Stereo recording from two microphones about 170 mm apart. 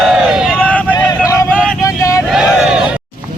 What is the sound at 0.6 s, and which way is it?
Vehicle, 10° left (ahead or behind).